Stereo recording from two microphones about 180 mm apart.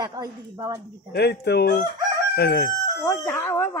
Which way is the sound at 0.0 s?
20° right (ahead or behind).